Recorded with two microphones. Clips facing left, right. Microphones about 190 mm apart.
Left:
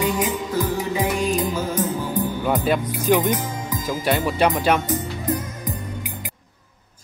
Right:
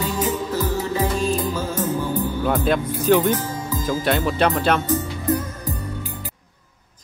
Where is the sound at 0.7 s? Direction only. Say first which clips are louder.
Even; 15° left (ahead or behind).